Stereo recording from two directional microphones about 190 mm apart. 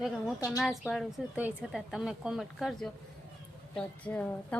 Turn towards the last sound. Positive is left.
turn(degrees=5)  # may be behind; listen again after turning